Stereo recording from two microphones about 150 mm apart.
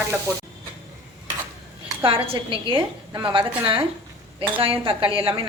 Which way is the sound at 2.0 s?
35° right (ahead or behind).